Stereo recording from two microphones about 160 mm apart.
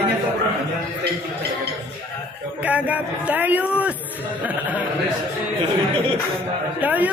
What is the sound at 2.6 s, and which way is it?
A man's voice, 10° right (ahead or behind).